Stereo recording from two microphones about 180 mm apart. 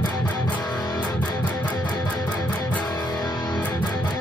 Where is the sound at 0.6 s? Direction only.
20° left (ahead or behind).